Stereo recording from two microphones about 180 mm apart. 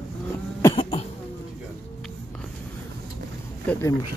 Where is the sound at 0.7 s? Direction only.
30° left (ahead or behind).